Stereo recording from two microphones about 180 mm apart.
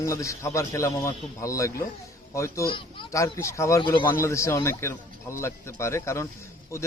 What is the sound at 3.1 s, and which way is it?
Speech, 15° left (ahead or behind).